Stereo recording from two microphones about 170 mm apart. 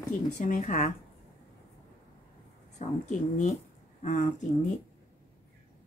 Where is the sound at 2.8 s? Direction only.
45° left (ahead or behind).